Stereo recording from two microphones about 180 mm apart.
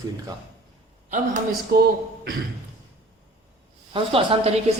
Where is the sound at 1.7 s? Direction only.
60° right (ahead or behind).